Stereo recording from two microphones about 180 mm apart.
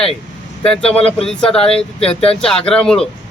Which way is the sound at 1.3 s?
5° left (ahead or behind).